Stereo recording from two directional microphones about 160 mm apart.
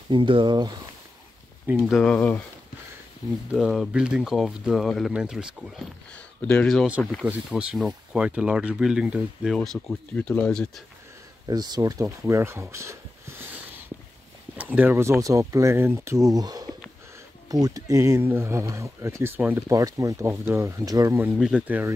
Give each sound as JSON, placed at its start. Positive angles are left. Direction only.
{"t": 0.1, "sound": "speech", "side_deg": -30}
{"t": 1.9, "sound": "speech", "side_deg": 0}
{"t": 3.5, "sound": "speech", "side_deg": 0}
{"t": 6.1, "sound": "speech", "side_deg": 10}
{"t": 7.2, "sound": "speech", "side_deg": -5}
{"t": 11.4, "sound": "speech", "side_deg": -25}
{"t": 14.6, "sound": "speech", "side_deg": -10}
{"t": 21.4, "sound": "speech", "side_deg": -5}